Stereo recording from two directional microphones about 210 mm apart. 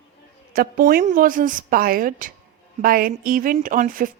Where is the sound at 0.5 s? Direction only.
40° right (ahead or behind).